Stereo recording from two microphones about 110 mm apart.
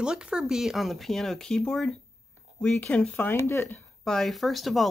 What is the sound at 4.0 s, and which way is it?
Speech, 5° left (ahead or behind).